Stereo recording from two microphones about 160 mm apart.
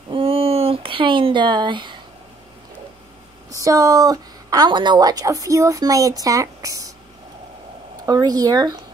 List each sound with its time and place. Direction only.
0.1 s a sound: 35° right (ahead or behind)
3.5 s a woman's voice: 20° right (ahead or behind)
8.0 s a woman's voice: 20° right (ahead or behind)